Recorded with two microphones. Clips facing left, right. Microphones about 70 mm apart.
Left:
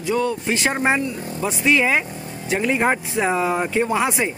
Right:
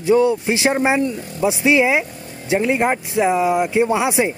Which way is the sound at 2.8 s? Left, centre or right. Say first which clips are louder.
Right 2 dB; centre.